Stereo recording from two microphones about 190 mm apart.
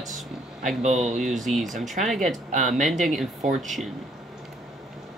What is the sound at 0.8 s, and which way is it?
Speech, 40° right (ahead or behind).